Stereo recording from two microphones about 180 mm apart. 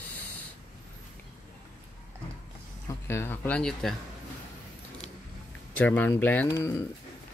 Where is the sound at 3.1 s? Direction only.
15° left (ahead or behind).